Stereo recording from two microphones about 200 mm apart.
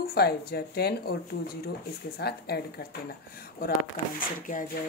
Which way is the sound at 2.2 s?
55° left (ahead or behind).